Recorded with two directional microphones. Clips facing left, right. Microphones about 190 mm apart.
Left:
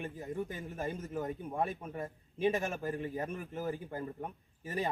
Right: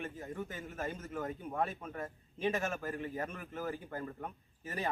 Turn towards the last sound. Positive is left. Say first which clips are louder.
# left 3 dB
turn(degrees=15)  # may be behind; listen again after turning